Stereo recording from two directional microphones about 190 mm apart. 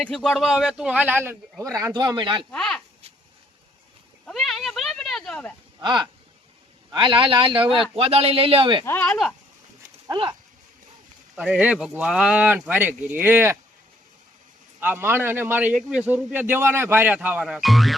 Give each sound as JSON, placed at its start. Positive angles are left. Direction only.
{"t": 0.1, "sound": "a man's voice", "side_deg": 5}
{"t": 2.5, "sound": "speech", "side_deg": 5}
{"t": 4.3, "sound": "cat", "side_deg": 0}
{"t": 5.8, "sound": "speech", "side_deg": -25}
{"t": 8.8, "sound": "speech", "side_deg": 10}
{"t": 10.1, "sound": "speech", "side_deg": -25}
{"t": 11.3, "sound": "a man's voice", "side_deg": -5}
{"t": 14.8, "sound": "a man's voice", "side_deg": -10}